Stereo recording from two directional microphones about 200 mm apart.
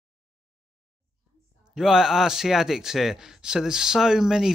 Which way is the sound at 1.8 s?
5° right (ahead or behind).